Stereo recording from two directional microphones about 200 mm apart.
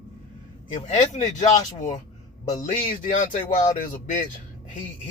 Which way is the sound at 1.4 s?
35° left (ahead or behind).